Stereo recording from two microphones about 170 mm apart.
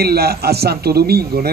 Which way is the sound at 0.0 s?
65° right (ahead or behind).